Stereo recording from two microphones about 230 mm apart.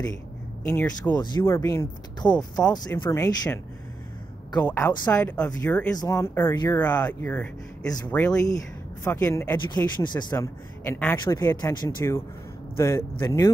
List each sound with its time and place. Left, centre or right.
0.7 s speech: centre
4.6 s speech: centre